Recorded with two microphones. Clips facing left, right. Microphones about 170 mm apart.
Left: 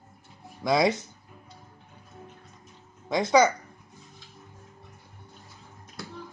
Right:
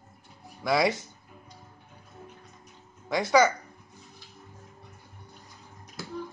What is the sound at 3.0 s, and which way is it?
Speech, 20° left (ahead or behind).